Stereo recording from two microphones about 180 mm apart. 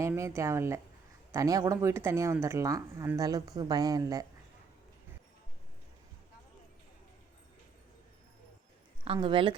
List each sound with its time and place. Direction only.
0.0 s speech: 15° right (ahead or behind)
9.0 s speech: 30° right (ahead or behind)